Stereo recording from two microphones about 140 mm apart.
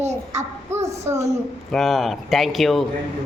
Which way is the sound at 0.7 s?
20° right (ahead or behind).